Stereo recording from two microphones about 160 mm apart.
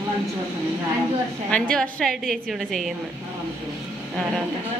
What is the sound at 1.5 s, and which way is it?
A woman's voice, 5° left (ahead or behind).